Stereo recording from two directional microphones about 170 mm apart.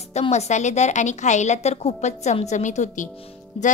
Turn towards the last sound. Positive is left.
turn(degrees=35)  # may be behind; listen again after turning